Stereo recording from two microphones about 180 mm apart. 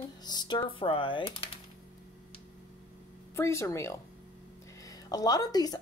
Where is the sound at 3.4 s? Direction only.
15° left (ahead or behind).